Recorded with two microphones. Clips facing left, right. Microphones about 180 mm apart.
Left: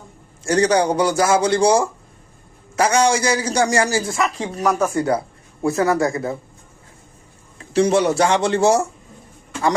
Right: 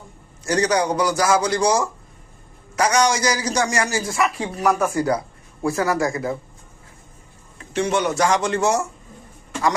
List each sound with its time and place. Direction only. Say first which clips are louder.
0.4 s a man's voice: left 3 dB; 30° left (ahead or behind)
4.4 s speech: left 1 dB; centre (ahead or behind)
4.9 s a man's voice: left 1 dB; 30° left (ahead or behind)
7.6 s speech: left 5 dB; 35° left (ahead or behind)